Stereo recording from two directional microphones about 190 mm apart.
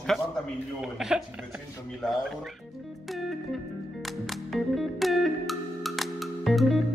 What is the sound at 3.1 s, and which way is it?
Music, centre (ahead or behind).